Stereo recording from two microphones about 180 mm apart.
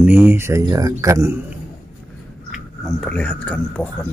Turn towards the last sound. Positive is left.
turn(degrees=5)  # may be behind; listen again after turning